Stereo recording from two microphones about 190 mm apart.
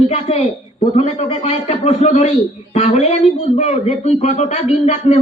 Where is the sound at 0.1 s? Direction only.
35° left (ahead or behind).